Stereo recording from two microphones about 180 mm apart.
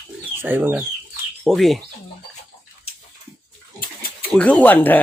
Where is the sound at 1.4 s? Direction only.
Centre (ahead or behind).